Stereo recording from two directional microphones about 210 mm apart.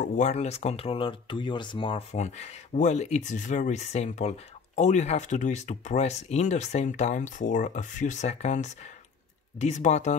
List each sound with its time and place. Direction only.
0.0 s speech: 35° left (ahead or behind)